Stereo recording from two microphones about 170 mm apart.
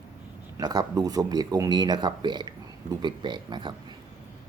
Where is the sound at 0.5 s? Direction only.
25° right (ahead or behind).